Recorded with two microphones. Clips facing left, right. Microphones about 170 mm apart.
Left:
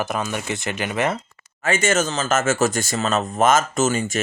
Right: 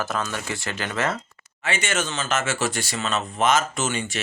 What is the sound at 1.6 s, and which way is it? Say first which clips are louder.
Speech: left 6 dB; 45° left (ahead or behind).